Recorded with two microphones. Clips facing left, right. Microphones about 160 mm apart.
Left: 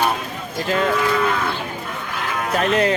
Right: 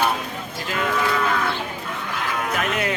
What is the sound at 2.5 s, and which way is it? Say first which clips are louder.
Speech: left 9 dB; 35° left (ahead or behind).